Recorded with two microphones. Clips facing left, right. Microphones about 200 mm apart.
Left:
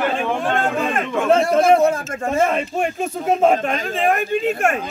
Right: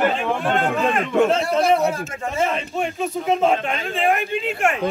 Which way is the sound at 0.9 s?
50° left (ahead or behind).